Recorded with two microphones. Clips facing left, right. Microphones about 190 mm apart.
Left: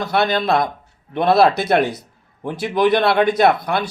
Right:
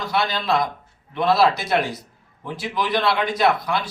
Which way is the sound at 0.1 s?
55° left (ahead or behind).